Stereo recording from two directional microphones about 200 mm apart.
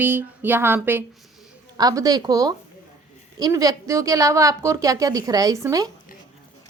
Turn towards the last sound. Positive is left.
turn(degrees=-15)  # may be behind; listen again after turning